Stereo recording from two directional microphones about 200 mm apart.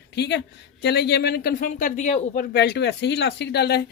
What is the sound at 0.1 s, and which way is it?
Speech, 60° left (ahead or behind).